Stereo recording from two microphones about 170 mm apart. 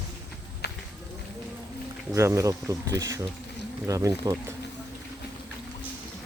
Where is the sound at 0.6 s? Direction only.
75° left (ahead or behind).